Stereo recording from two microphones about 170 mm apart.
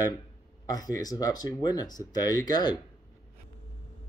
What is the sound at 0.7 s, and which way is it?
Speech, 20° left (ahead or behind).